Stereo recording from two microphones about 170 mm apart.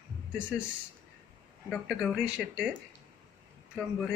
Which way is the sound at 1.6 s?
Centre (ahead or behind).